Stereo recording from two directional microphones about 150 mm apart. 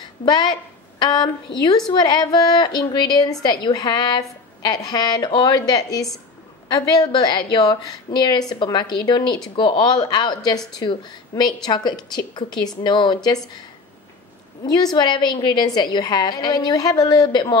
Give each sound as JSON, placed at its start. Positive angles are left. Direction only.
{"t": 0.2, "sound": "a woman's voice", "side_deg": 30}
{"t": 14.6, "sound": "a woman's voice", "side_deg": 30}